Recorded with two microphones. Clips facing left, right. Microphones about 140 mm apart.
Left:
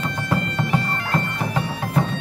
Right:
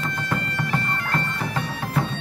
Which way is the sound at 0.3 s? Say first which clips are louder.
Left 5 dB; 15° left (ahead or behind).